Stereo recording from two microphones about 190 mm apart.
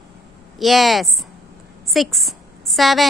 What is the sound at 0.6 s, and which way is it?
A woman's voice, centre (ahead or behind).